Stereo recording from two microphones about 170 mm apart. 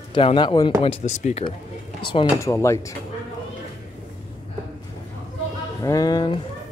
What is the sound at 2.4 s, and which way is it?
Speech, 15° left (ahead or behind).